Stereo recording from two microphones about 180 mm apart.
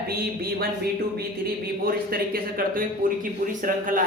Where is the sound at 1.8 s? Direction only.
55° right (ahead or behind).